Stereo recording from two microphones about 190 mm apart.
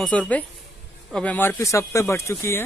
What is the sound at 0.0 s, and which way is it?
Speech, 5° left (ahead or behind).